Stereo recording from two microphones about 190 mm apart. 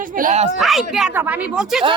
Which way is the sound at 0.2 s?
40° right (ahead or behind).